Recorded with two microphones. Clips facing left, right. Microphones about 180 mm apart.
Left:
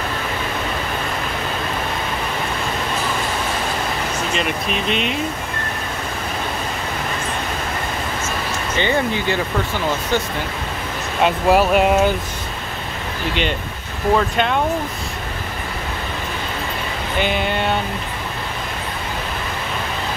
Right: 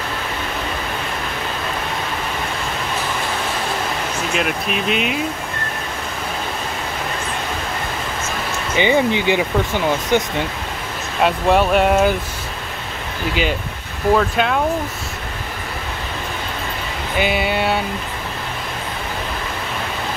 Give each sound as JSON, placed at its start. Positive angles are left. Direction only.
{"t": 4.3, "sound": "speech", "side_deg": -5}
{"t": 8.7, "sound": "speech", "side_deg": -15}
{"t": 11.2, "sound": "speech", "side_deg": 5}
{"t": 13.3, "sound": "speech", "side_deg": -5}
{"t": 17.2, "sound": "speech", "side_deg": -5}